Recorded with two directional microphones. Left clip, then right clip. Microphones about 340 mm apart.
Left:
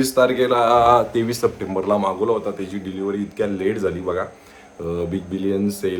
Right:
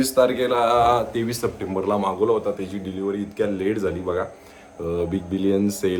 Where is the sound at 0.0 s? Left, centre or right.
Centre.